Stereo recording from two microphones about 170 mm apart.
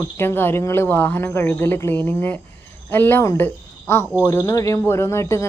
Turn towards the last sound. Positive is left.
turn(degrees=15)  # may be behind; listen again after turning